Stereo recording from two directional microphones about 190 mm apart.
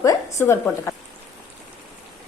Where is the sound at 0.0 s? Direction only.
15° left (ahead or behind).